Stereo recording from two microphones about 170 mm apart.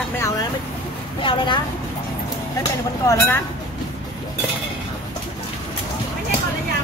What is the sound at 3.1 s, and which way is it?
Speech, 15° left (ahead or behind).